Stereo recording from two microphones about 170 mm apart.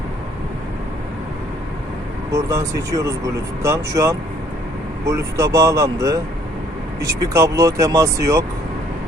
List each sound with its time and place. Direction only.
2.3 s speech: 20° right (ahead or behind)